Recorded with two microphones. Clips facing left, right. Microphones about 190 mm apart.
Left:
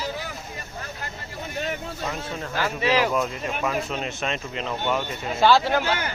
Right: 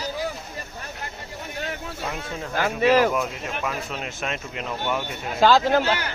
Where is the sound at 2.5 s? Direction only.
50° right (ahead or behind).